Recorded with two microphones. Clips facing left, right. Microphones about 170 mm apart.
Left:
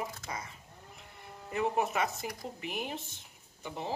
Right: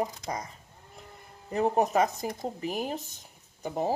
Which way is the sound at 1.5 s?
40° right (ahead or behind).